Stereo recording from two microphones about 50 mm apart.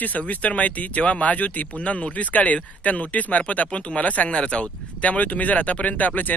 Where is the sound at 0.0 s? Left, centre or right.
Left.